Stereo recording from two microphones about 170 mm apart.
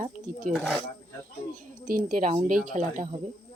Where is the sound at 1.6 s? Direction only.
55° right (ahead or behind).